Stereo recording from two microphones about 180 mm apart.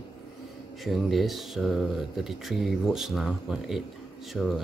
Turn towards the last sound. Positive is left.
turn(degrees=0)  # may be behind; listen again after turning